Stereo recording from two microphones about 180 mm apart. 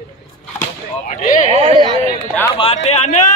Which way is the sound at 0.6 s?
45° left (ahead or behind).